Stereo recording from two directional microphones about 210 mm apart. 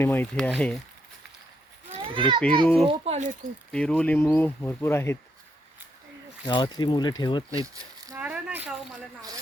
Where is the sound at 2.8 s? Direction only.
30° right (ahead or behind).